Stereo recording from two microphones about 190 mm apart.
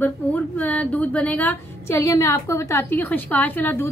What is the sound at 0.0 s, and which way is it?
A woman's voice, 10° left (ahead or behind).